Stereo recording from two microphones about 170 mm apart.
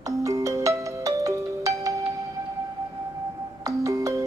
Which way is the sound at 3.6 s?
20° right (ahead or behind).